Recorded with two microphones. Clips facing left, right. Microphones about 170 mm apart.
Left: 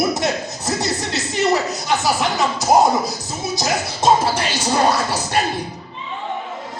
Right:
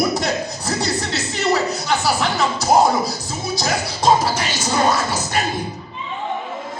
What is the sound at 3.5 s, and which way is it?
Music, 25° left (ahead or behind).